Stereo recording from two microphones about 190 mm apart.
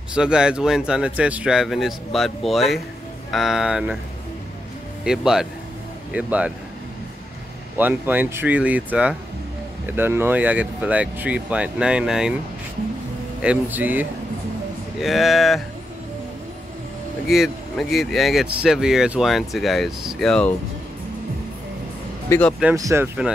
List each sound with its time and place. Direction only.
0.1 s speech: 5° right (ahead or behind)
5.0 s speech: 5° right (ahead or behind)
7.7 s speech: 10° right (ahead or behind)
13.4 s speech: 5° right (ahead or behind)
17.3 s speech: centre (ahead or behind)
22.8 s speech: 15° right (ahead or behind)